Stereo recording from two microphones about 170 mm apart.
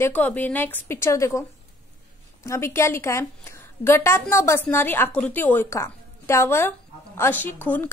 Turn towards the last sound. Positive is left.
turn(degrees=10)  # may be behind; listen again after turning